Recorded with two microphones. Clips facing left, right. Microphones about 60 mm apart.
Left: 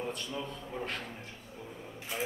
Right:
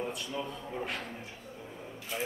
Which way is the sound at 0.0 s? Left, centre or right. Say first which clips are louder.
Right 1 dB; centre.